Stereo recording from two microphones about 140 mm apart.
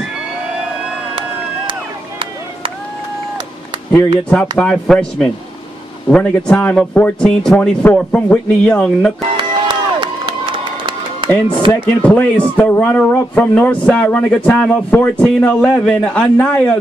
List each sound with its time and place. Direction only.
1.7 s a sound: 35° right (ahead or behind)
4.2 s speech: 10° left (ahead or behind)
9.4 s crowd: 35° right (ahead or behind)
11.7 s speech: 10° left (ahead or behind)